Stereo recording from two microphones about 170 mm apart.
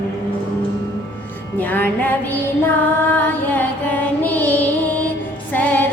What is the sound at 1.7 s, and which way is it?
Music, 10° left (ahead or behind).